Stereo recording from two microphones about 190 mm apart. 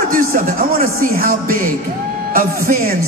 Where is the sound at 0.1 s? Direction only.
45° right (ahead or behind).